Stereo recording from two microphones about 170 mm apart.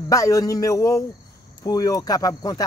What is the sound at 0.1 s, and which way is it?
Speech, 20° left (ahead or behind).